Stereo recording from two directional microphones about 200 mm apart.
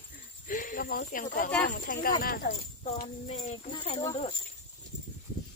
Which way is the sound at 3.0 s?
35° left (ahead or behind).